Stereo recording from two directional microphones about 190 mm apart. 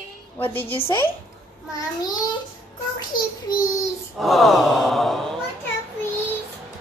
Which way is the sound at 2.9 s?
20° left (ahead or behind).